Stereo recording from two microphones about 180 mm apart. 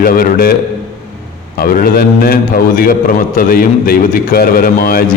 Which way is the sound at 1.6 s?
55° left (ahead or behind).